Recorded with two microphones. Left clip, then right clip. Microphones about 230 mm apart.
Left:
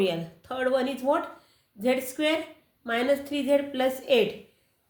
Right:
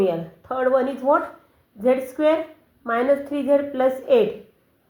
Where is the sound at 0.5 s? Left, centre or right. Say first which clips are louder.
Right 6 dB; left.